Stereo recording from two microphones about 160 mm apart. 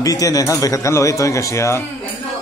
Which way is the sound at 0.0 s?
20° left (ahead or behind).